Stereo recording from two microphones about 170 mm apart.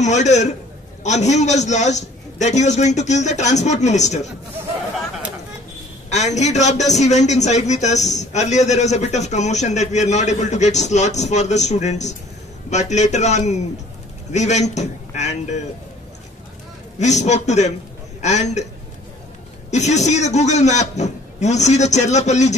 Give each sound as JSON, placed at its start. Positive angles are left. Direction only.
{"t": 0.0, "sound": "a man's voice", "side_deg": 45}
{"t": 6.0, "sound": "a man's voice", "side_deg": 40}
{"t": 17.0, "sound": "a man's voice", "side_deg": 45}
{"t": 19.7, "sound": "a man's voice", "side_deg": 45}